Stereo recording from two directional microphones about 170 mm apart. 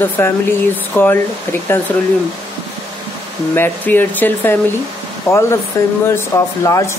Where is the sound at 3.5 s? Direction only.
10° left (ahead or behind).